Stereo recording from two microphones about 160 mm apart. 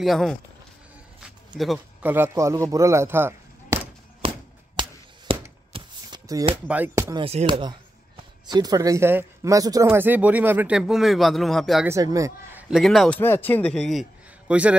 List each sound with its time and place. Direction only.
0.0 s speech: centre (ahead or behind)
2.0 s speech: 15° right (ahead or behind)
2.7 s a sound: 20° right (ahead or behind)
5.3 s a sound: 35° right (ahead or behind)
5.7 s shuffling cards: 25° right (ahead or behind)
6.7 s speech: 15° right (ahead or behind)
7.2 s speech: 35° right (ahead or behind)
8.5 s speech: 25° right (ahead or behind); by 11.8 s centre (ahead or behind)
11.8 s speech: 20° right (ahead or behind)
12.5 s speech: 5° right (ahead or behind)
13.2 s speech: 10° left (ahead or behind); by 14.8 s 5° right (ahead or behind)